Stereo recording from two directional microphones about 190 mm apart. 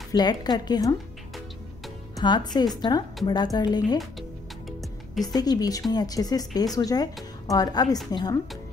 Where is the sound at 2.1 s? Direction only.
20° left (ahead or behind).